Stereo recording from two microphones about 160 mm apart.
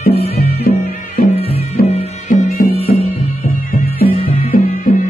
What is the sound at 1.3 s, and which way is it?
Music, 40° left (ahead or behind).